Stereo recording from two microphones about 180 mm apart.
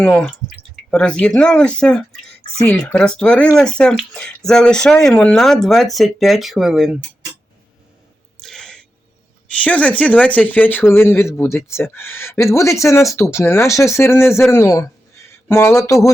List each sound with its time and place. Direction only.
0.0 s speech: 5° left (ahead or behind)
8.4 s sneeze: 5° left (ahead or behind)
9.6 s speech: 5° left (ahead or behind)